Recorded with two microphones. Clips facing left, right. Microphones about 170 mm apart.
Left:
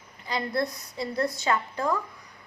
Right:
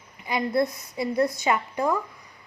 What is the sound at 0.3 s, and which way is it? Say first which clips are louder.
A woman's voice: right 4 dB; 20° right (ahead or behind).